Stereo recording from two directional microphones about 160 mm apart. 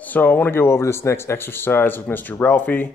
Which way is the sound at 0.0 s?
10° left (ahead or behind).